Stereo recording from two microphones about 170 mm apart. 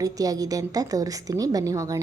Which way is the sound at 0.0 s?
20° right (ahead or behind).